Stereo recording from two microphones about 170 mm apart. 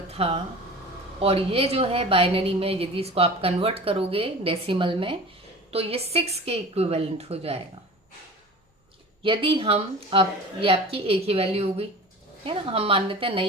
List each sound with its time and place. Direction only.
0.1 s a woman's voice: 35° right (ahead or behind)
9.2 s a woman's voice: 30° right (ahead or behind)